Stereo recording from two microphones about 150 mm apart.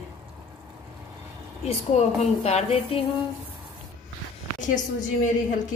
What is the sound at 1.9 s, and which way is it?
A woman's voice, 50° left (ahead or behind).